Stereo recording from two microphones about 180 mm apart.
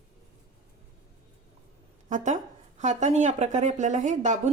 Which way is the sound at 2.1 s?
45° right (ahead or behind).